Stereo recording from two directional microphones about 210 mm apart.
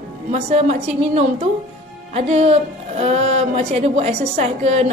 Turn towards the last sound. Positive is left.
turn(degrees=-30)  # may be behind; listen again after turning